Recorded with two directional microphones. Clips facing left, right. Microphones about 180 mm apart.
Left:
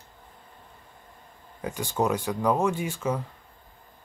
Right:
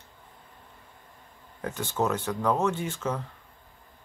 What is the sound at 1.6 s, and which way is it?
Speech, 10° left (ahead or behind).